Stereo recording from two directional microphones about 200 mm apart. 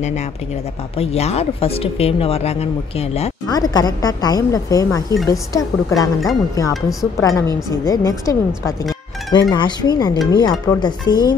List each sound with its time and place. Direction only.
0.9 s speech: 30° left (ahead or behind)
3.4 s speech: 20° left (ahead or behind)
6.7 s speech: centre (ahead or behind)
7.2 s speech: 15° left (ahead or behind)